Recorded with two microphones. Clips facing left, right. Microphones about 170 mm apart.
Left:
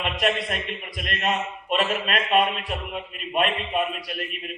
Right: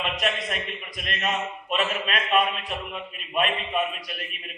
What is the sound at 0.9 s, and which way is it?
A man's voice, 40° left (ahead or behind).